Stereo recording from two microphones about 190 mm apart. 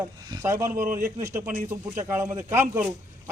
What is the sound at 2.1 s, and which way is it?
Speech, 15° right (ahead or behind).